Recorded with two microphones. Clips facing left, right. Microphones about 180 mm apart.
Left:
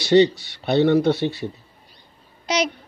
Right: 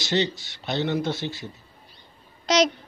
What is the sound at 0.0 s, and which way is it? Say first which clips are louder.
Speech: left 10 dB; 60° left (ahead or behind).